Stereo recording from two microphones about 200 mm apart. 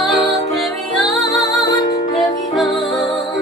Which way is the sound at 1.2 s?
15° left (ahead or behind).